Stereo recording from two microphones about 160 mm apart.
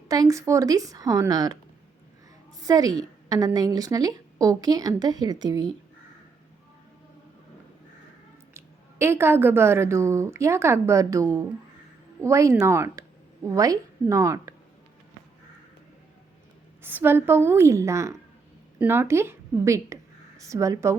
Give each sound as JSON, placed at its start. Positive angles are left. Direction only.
{"t": 0.1, "sound": "a woman's voice", "side_deg": -20}
{"t": 2.6, "sound": "a woman's voice", "side_deg": -20}
{"t": 8.5, "sound": "a woman's voice", "side_deg": -15}
{"t": 16.8, "sound": "a woman's voice", "side_deg": -15}